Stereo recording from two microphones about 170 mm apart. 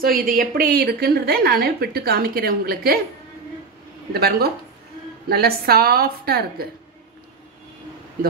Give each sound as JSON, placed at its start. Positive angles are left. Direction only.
{"t": 0.3, "sound": "a woman's voice", "side_deg": -60}
{"t": 4.1, "sound": "a woman's voice", "side_deg": -65}